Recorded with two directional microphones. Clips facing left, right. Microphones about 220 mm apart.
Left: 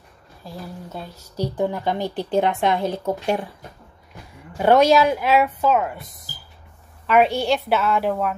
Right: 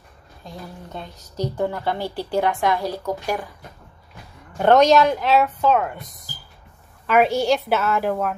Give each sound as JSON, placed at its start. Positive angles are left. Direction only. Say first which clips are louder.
{"t": 0.4, "sound": "speech", "louder": "left 2 dB", "side_deg": 5}
{"t": 4.6, "sound": "speech", "louder": "even", "side_deg": 10}
{"t": 7.1, "sound": "a woman's voice", "louder": "even", "side_deg": 0}